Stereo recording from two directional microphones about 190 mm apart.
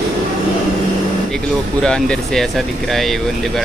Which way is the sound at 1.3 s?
5° left (ahead or behind).